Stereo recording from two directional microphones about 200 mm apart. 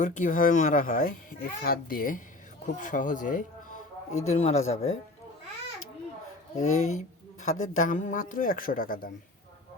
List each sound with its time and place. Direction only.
0.0 s speech: 40° left (ahead or behind)
6.6 s speech: 35° left (ahead or behind)